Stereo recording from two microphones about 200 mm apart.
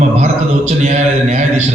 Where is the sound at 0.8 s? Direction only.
35° right (ahead or behind).